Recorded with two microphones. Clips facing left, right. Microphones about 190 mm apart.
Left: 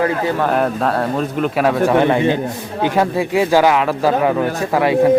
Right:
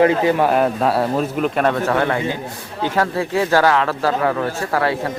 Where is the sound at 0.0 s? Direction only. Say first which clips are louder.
Right 3 dB; 20° right (ahead or behind).